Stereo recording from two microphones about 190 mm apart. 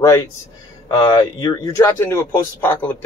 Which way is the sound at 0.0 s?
15° left (ahead or behind).